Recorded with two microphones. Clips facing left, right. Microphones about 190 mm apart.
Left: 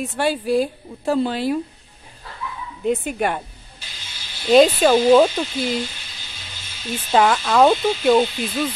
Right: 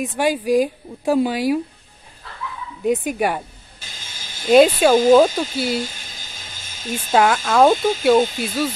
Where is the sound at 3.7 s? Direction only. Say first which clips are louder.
Right 2 dB; 45° right (ahead or behind).